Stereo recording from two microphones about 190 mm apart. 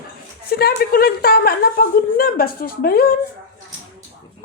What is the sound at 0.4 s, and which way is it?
A woman's voice, 55° left (ahead or behind).